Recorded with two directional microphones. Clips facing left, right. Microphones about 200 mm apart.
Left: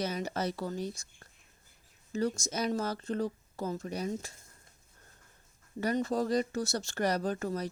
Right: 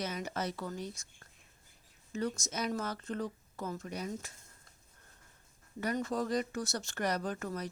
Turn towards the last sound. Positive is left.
turn(degrees=35)  # may be behind; listen again after turning